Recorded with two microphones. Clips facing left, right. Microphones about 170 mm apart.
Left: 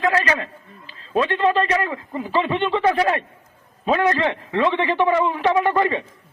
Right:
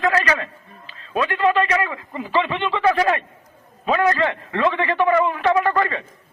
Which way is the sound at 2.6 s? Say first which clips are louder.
Right 2 dB; 30° left (ahead or behind).